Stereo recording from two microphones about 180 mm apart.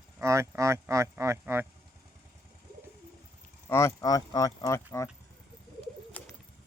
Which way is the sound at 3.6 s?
15° left (ahead or behind).